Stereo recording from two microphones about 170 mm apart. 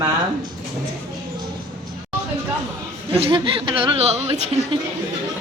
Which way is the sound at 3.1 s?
30° right (ahead or behind).